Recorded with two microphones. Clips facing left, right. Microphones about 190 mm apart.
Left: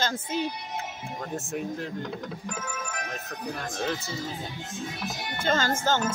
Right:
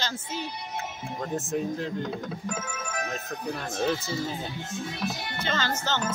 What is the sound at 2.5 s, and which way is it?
Speech, 25° right (ahead or behind).